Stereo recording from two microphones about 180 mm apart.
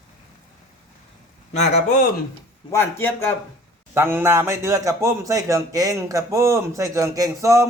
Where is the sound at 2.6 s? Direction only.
15° left (ahead or behind).